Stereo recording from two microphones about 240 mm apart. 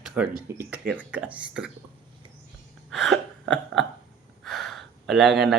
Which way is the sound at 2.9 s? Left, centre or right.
Centre.